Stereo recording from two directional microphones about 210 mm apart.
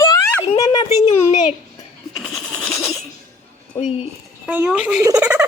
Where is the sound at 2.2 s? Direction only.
5° left (ahead or behind).